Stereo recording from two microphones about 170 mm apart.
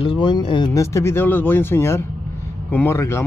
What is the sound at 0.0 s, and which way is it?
Speech, 30° left (ahead or behind).